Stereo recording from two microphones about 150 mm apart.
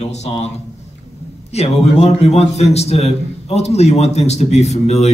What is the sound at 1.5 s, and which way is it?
A man's voice, 45° left (ahead or behind).